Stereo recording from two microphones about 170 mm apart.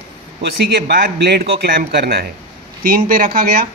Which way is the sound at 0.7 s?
70° right (ahead or behind).